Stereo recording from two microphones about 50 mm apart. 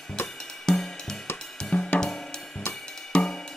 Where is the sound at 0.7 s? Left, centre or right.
Centre.